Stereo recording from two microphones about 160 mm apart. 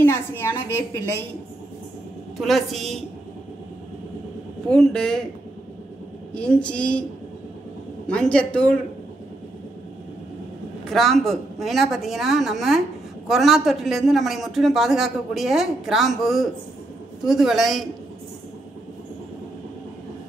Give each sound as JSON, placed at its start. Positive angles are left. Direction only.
{"t": 0.0, "sound": "a woman's voice", "side_deg": 15}
{"t": 2.3, "sound": "a man's voice", "side_deg": 0}
{"t": 4.6, "sound": "a man's voice", "side_deg": 5}
{"t": 6.3, "sound": "a woman's voice", "side_deg": 5}
{"t": 8.1, "sound": "a woman's voice", "side_deg": 5}
{"t": 10.9, "sound": "a man's voice", "side_deg": 0}